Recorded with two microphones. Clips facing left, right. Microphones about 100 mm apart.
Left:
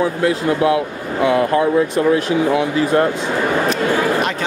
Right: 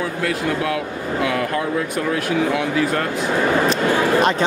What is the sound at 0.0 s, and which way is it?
Speech, 25° left (ahead or behind).